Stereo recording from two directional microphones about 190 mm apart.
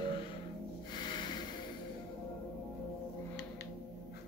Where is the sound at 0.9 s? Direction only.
25° left (ahead or behind).